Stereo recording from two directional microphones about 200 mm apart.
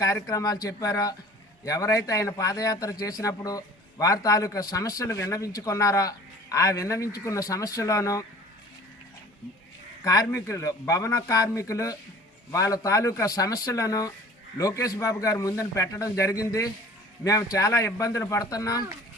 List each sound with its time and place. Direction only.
0.0 s a man's voice: 15° left (ahead or behind)
10.0 s a man's voice: 15° left (ahead or behind)